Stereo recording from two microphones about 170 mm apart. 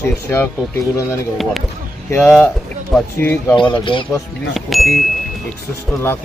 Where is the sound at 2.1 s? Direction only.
15° left (ahead or behind).